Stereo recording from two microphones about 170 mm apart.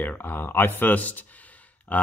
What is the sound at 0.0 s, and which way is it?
Speech, 10° left (ahead or behind).